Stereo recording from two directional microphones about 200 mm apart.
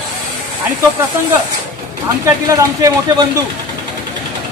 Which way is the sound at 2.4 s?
15° right (ahead or behind).